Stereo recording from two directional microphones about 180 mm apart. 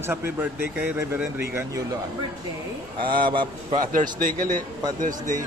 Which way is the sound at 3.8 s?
50° right (ahead or behind).